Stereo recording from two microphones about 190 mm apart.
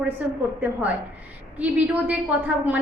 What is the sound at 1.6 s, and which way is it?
Speech, 10° right (ahead or behind).